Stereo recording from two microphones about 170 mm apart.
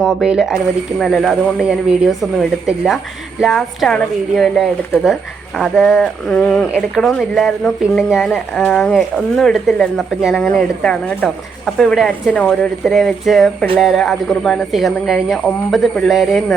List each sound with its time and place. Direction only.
0.0 s speech: 5° right (ahead or behind)